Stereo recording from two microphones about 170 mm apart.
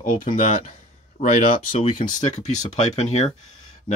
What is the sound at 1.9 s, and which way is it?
Speech, 45° left (ahead or behind).